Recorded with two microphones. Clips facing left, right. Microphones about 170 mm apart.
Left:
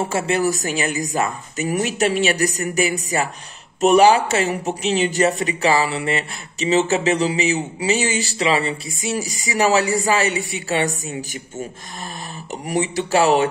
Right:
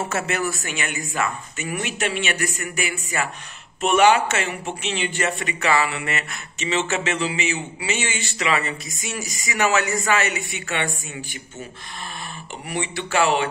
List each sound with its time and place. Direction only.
0.0 s speech: 30° left (ahead or behind)
12.6 s speech: 40° left (ahead or behind)